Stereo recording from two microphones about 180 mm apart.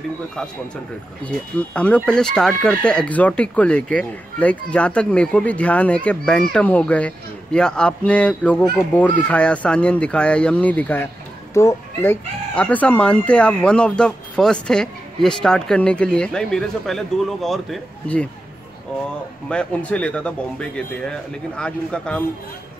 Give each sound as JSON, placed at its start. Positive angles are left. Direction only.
{"t": 1.2, "sound": "speech", "side_deg": 5}
{"t": 19.5, "sound": "speech", "side_deg": 5}